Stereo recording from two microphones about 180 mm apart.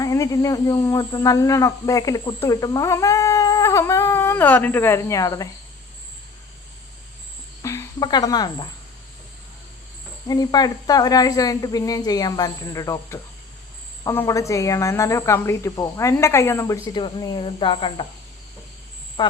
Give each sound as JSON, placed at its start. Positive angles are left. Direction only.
{"t": 0.0, "sound": "speech", "side_deg": 20}
{"t": 7.6, "sound": "speech", "side_deg": 15}
{"t": 10.2, "sound": "speech", "side_deg": 20}
{"t": 19.2, "sound": "speech", "side_deg": 25}